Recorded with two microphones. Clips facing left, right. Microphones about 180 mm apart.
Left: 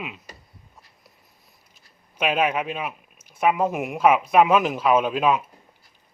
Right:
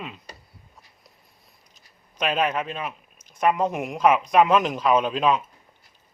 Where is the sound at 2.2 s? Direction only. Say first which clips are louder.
Left 2 dB; 10° left (ahead or behind).